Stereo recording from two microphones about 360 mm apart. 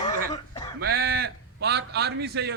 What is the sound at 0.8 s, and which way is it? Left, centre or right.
A man's voice, right.